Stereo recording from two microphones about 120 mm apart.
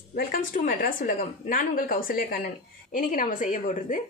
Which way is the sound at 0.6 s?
90° left.